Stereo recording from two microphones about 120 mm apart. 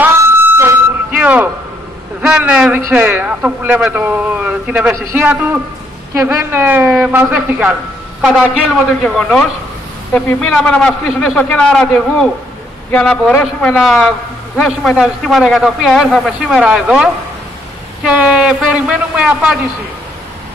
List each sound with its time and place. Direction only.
0.0 s a sound: 20° right (ahead or behind)
2.2 s a man's voice: 10° right (ahead or behind)
9.0 s a man's voice: centre (ahead or behind)
13.7 s a man's voice: centre (ahead or behind)